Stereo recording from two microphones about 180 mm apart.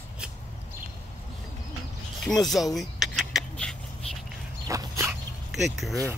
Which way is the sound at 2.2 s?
Centre (ahead or behind).